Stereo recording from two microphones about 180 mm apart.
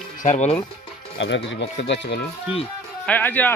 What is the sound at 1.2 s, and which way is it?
Speech, 85° left.